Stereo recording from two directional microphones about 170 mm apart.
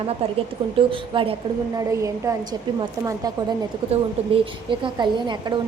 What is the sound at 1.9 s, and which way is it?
Speech, 20° right (ahead or behind).